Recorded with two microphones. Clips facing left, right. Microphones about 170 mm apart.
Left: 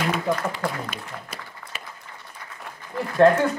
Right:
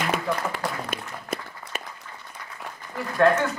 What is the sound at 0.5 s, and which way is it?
Applause, 55° right (ahead or behind).